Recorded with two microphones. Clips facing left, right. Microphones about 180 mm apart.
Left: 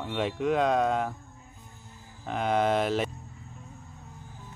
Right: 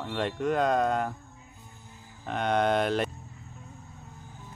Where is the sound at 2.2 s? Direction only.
Centre (ahead or behind).